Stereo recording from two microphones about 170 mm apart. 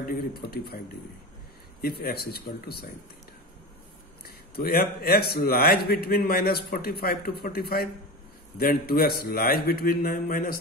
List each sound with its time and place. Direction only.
0.0 s a man's voice: 60° left (ahead or behind)
4.6 s a man's voice: 65° left (ahead or behind)